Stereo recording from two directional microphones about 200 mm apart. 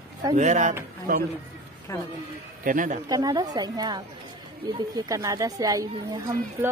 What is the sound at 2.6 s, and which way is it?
Speech, 40° right (ahead or behind).